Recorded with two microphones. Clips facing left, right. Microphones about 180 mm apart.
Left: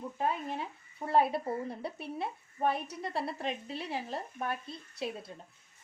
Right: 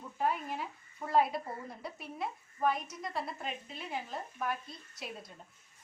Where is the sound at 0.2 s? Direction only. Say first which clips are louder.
Even; 25° left (ahead or behind).